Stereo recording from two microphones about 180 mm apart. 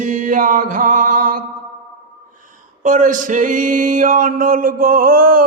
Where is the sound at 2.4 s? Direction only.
45° right (ahead or behind).